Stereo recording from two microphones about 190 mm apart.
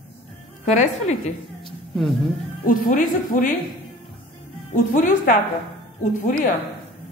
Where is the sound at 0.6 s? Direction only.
35° left (ahead or behind).